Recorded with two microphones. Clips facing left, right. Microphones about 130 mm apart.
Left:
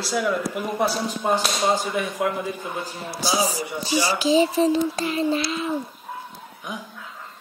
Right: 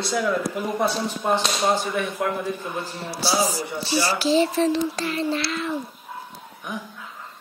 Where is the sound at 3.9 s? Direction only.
40° right (ahead or behind).